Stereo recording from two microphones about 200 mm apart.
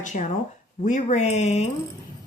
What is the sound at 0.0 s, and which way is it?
Speech, 40° left (ahead or behind).